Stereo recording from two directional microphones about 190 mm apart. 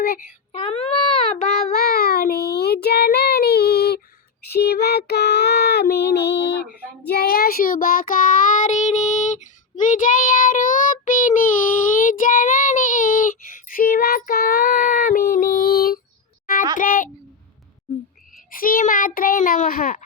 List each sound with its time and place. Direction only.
0.5 s a child's voice: 30° left (ahead or behind)
1.4 s child singing: 55° left (ahead or behind)
16.7 s a sound: 45° left (ahead or behind)
18.5 s a child's voice: 45° left (ahead or behind)